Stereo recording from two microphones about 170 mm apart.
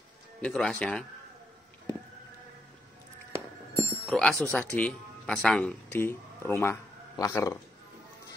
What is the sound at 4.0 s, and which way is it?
Speech, 5° left (ahead or behind).